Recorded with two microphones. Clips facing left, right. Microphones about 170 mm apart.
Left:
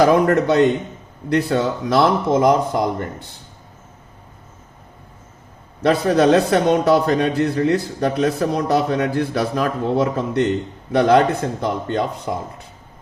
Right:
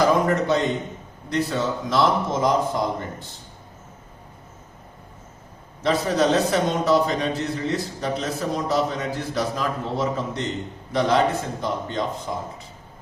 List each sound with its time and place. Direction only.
0.0 s a man's voice: 60° left (ahead or behind)
5.8 s a man's voice: 60° left (ahead or behind)
11.6 s a man's voice: 65° left (ahead or behind)